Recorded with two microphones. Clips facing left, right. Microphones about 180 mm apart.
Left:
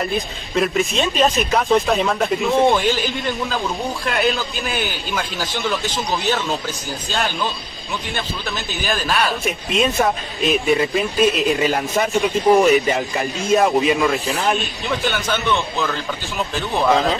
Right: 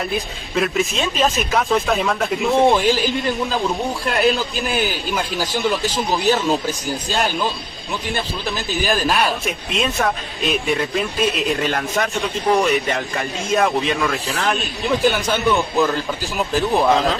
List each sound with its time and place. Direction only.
0.1 s speech: centre (ahead or behind)
16.5 s speech: centre (ahead or behind)